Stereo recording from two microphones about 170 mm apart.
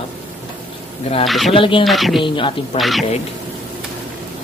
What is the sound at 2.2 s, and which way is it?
Speech, 30° left (ahead or behind).